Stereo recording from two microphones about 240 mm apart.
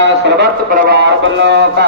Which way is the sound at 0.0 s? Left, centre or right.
Right.